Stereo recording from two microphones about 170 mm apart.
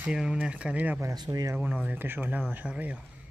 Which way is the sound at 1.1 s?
25° right (ahead or behind).